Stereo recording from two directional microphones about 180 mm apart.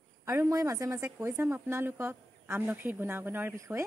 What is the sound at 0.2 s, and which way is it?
Speech, 15° right (ahead or behind).